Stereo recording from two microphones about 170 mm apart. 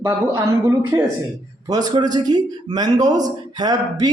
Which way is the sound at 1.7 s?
20° right (ahead or behind).